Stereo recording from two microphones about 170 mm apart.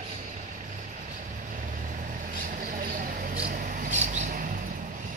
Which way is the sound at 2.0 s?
55° right (ahead or behind).